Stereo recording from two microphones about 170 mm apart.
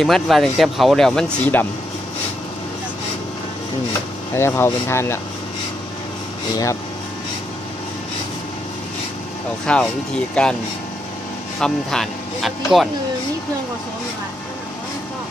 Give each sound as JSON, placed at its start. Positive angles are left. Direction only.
{"t": 0.0, "sound": "speech", "side_deg": 0}
{"t": 4.3, "sound": "speech", "side_deg": 15}
{"t": 6.5, "sound": "speech", "side_deg": 20}
{"t": 9.7, "sound": "speech", "side_deg": 5}
{"t": 11.6, "sound": "speech", "side_deg": 0}